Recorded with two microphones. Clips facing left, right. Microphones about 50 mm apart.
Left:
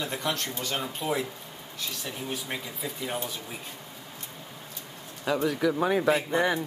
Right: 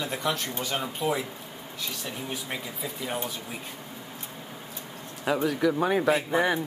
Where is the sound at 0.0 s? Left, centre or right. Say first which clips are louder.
Right 1 dB; centre.